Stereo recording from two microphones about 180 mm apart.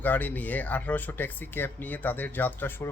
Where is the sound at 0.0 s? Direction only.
10° left (ahead or behind).